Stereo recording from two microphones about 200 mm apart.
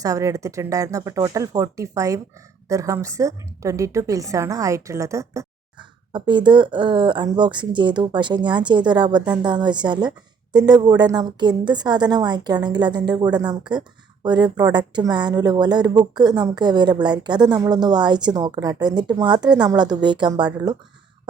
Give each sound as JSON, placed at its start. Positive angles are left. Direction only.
{"t": 0.0, "sound": "a woman's voice", "side_deg": -15}